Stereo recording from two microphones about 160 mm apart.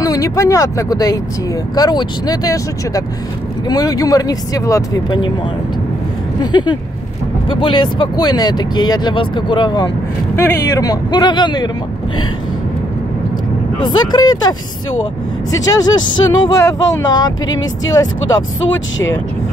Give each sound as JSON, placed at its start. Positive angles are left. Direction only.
{"t": 0.0, "sound": "speech", "side_deg": 20}
{"t": 6.4, "sound": "speech", "side_deg": 25}
{"t": 13.9, "sound": "speech", "side_deg": 25}
{"t": 15.6, "sound": "speech", "side_deg": 25}